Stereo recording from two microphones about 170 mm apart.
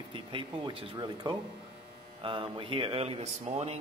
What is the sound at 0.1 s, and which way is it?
Speech, 30° right (ahead or behind).